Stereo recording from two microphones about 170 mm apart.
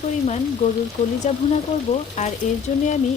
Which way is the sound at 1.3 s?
45° left (ahead or behind).